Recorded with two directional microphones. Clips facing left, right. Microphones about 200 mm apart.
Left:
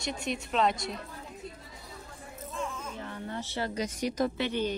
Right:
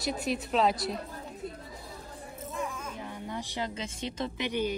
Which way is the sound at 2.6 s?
15° right (ahead or behind).